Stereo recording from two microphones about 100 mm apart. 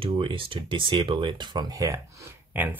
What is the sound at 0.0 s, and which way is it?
Speech, 60° right (ahead or behind).